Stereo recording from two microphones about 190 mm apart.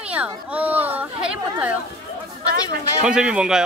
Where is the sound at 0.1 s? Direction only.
5° right (ahead or behind).